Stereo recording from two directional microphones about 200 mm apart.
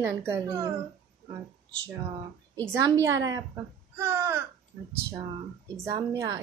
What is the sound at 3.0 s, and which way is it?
A child's voice, 15° right (ahead or behind).